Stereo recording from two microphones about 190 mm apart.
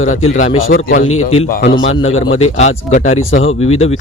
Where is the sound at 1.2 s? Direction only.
30° left (ahead or behind).